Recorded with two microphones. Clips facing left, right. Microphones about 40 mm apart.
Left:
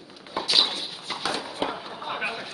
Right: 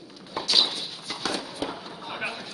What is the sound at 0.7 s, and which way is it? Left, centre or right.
Dog, left.